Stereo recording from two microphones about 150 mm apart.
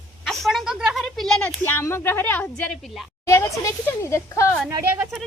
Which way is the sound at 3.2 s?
20° left (ahead or behind).